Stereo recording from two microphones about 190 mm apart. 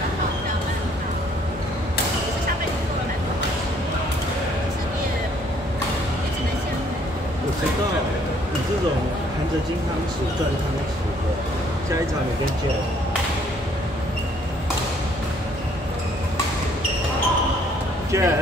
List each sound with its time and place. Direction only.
18.1 s speech: 15° right (ahead or behind)